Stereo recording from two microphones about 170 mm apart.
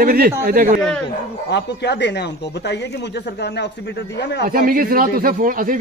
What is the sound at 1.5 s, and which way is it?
Speech, 85° left.